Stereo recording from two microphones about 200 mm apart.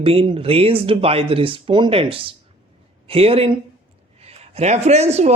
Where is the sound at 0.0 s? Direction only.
30° right (ahead or behind).